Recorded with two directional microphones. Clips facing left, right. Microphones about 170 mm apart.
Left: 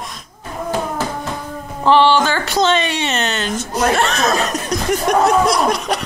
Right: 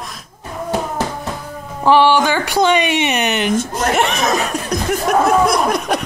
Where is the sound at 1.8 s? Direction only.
10° right (ahead or behind).